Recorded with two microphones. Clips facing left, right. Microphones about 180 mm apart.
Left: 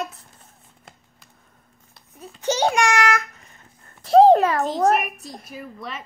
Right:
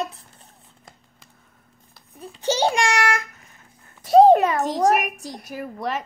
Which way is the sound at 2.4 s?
30° right (ahead or behind).